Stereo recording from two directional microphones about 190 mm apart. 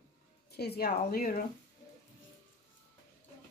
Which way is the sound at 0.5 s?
55° left (ahead or behind).